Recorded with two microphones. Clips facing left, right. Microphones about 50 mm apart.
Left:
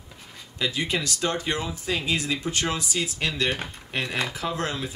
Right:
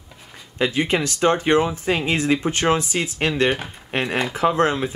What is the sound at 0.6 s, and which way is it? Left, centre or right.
Speech, right.